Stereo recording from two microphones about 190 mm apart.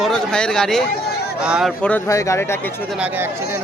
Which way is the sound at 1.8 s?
10° left (ahead or behind).